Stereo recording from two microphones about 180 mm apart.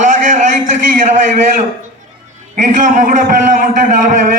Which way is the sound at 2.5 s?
45° right (ahead or behind).